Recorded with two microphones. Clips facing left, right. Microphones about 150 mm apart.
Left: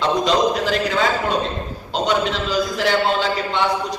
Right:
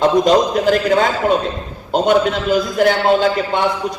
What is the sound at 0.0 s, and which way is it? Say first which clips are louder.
A man's voice: right 5 dB; 50° right (ahead or behind).